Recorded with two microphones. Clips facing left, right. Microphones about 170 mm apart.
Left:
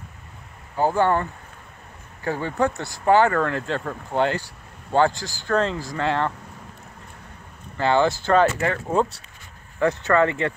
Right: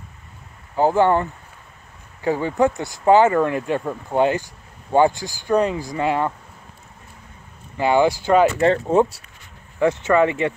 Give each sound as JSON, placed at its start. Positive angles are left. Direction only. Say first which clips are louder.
{"t": 0.7, "sound": "speech", "louder": "right 4 dB", "side_deg": -15}
{"t": 2.2, "sound": "speech", "louder": "right 4 dB", "side_deg": -15}
{"t": 7.7, "sound": "speech", "louder": "right 3 dB", "side_deg": -10}
{"t": 8.5, "sound": "speech", "louder": "right 7 dB", "side_deg": -35}
{"t": 9.8, "sound": "speech", "louder": "right 2 dB", "side_deg": -15}